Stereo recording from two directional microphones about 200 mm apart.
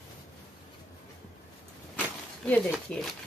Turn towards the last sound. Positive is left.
turn(degrees=5)  # may be behind; listen again after turning